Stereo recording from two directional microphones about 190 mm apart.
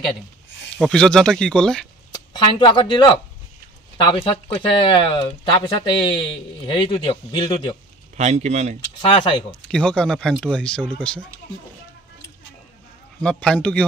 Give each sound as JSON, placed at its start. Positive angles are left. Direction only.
{"t": 0.7, "sound": "speech", "side_deg": 5}
{"t": 2.1, "sound": "speech", "side_deg": 25}
{"t": 8.2, "sound": "speech", "side_deg": -35}
{"t": 9.0, "sound": "speech", "side_deg": 25}
{"t": 9.7, "sound": "speech", "side_deg": 5}
{"t": 13.2, "sound": "speech", "side_deg": 5}